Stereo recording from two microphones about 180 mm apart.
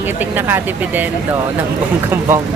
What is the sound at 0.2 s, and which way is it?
Speech, 10° right (ahead or behind).